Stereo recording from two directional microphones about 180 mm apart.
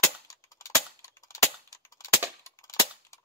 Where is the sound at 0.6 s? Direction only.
15° left (ahead or behind).